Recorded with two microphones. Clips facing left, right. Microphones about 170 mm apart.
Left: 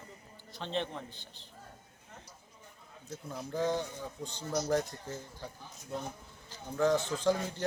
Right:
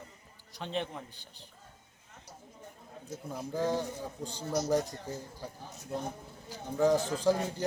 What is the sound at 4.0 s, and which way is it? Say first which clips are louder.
Speech: right 2 dB; 35° right (ahead or behind).